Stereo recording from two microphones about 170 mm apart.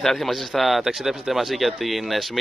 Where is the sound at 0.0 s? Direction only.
Centre (ahead or behind).